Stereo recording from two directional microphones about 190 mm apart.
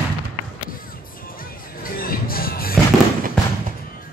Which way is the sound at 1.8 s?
50° left (ahead or behind).